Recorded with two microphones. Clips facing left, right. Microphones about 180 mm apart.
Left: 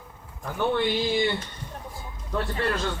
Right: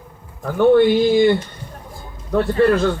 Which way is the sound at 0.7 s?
50° right (ahead or behind).